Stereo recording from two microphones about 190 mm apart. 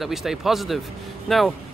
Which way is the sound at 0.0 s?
Centre (ahead or behind).